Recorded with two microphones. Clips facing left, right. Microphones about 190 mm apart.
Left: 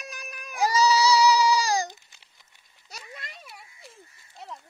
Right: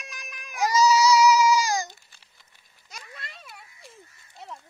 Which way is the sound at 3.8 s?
Centre (ahead or behind).